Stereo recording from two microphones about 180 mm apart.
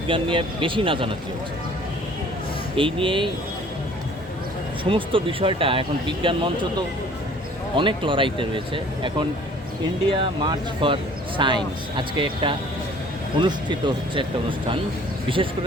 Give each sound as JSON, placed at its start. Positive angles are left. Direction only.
{"t": 0.1, "sound": "speech", "side_deg": -30}
{"t": 2.7, "sound": "speech", "side_deg": -30}
{"t": 4.8, "sound": "speech", "side_deg": -30}
{"t": 15.3, "sound": "speech", "side_deg": -30}